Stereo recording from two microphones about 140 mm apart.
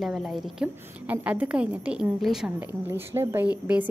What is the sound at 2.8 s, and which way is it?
Speech, 15° right (ahead or behind).